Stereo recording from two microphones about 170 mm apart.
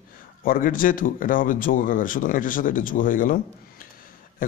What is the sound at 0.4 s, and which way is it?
A man's voice, 55° left (ahead or behind).